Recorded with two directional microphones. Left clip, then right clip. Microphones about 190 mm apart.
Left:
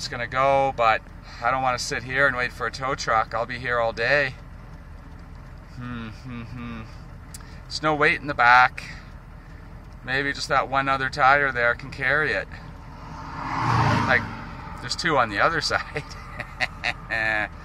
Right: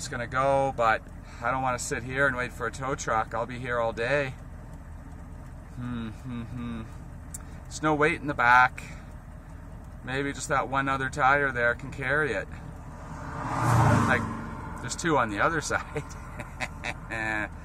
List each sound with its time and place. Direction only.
0.1 s speech: 5° right (ahead or behind)
5.8 s speech: 5° right (ahead or behind)
10.0 s speech: 5° right (ahead or behind)
13.4 s vehicle: 45° right (ahead or behind)
14.8 s speech: 10° right (ahead or behind)